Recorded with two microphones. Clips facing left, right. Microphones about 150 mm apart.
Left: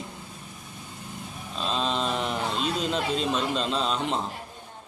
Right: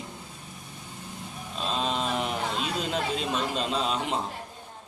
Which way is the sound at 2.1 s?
10° right (ahead or behind).